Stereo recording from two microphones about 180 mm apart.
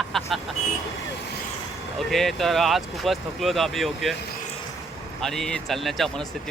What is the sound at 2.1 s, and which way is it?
Speech, centre (ahead or behind).